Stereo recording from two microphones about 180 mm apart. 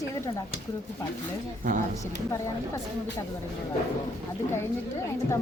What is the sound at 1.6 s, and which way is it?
Speech, 50° right (ahead or behind).